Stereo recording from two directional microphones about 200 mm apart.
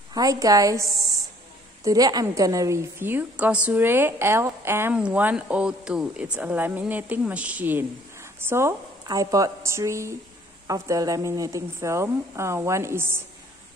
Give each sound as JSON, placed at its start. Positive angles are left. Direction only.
{"t": 0.1, "sound": "a woman's voice", "side_deg": -20}
{"t": 1.9, "sound": "a woman's voice", "side_deg": -20}